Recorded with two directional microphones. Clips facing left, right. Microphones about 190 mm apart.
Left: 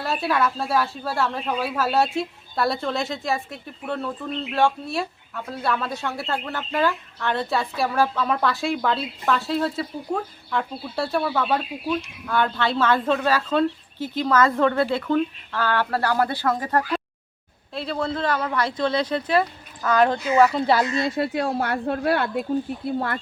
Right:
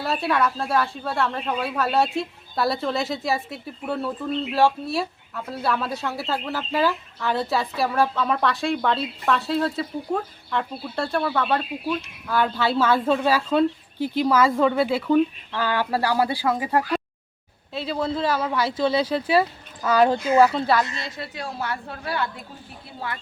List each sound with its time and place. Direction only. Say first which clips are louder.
0.0 s speech: even; centre (ahead or behind)
20.9 s speech: left 11 dB; 55° left (ahead or behind)